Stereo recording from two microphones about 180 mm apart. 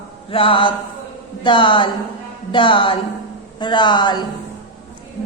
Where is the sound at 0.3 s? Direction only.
30° left (ahead or behind).